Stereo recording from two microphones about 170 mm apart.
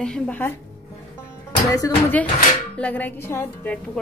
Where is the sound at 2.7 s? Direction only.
10° left (ahead or behind).